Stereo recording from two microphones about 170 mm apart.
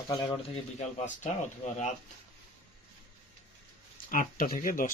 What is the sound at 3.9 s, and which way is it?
Speech, 55° left (ahead or behind).